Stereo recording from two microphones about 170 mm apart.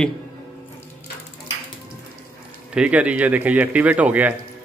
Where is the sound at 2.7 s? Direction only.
10° right (ahead or behind).